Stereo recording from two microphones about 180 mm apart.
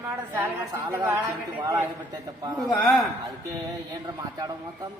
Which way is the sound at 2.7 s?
5° left (ahead or behind).